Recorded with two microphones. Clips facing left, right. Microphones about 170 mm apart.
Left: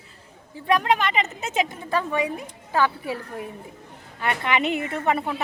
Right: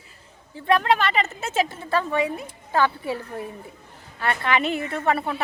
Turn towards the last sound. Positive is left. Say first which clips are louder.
# even
turn(degrees=15)  # may be behind; listen again after turning